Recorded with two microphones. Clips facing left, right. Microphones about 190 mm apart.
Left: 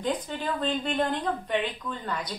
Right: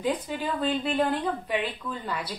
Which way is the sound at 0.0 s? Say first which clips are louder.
Right 1 dB; 10° right (ahead or behind).